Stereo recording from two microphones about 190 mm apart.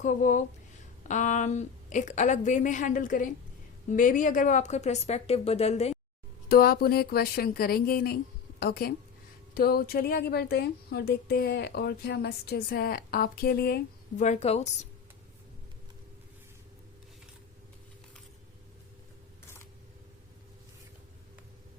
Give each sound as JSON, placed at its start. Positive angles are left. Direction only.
{"t": 0.0, "sound": "a woman's voice", "side_deg": 40}
{"t": 6.5, "sound": "a woman's voice", "side_deg": 55}
{"t": 14.2, "sound": "a woman's voice", "side_deg": 35}